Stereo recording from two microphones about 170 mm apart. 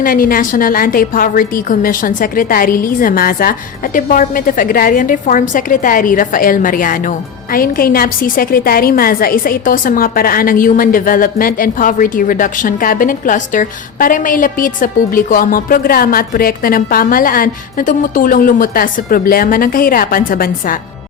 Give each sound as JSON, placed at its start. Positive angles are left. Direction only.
{"t": 0.0, "sound": "a woman's voice", "side_deg": 55}